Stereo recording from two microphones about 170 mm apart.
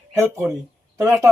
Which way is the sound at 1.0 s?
15° right (ahead or behind).